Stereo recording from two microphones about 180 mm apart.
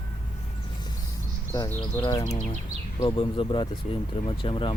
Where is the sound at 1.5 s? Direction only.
20° left (ahead or behind).